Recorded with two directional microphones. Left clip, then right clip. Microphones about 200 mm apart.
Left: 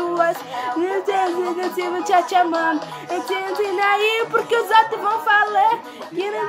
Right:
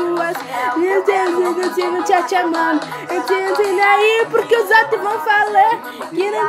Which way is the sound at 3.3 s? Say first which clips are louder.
Right 7 dB; 30° right (ahead or behind).